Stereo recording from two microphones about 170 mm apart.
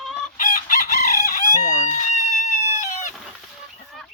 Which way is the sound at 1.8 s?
45° left (ahead or behind).